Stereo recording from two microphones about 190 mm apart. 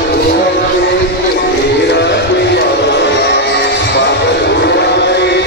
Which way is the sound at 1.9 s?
60° left (ahead or behind).